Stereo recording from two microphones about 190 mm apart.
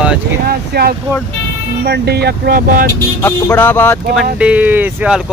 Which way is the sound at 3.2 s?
10° left (ahead or behind).